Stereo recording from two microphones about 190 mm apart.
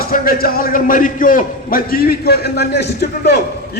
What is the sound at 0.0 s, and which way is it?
A man's voice, 50° left (ahead or behind).